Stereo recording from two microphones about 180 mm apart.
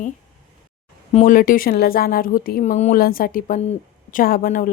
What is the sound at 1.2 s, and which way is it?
Speech, 50° left (ahead or behind).